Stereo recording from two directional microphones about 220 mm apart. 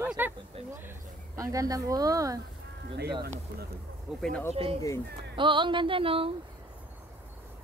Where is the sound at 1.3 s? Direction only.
15° right (ahead or behind).